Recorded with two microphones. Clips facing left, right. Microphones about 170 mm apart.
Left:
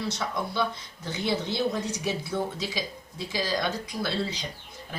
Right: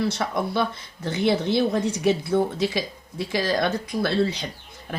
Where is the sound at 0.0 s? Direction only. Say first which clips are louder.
Right 6 dB; 60° right (ahead or behind).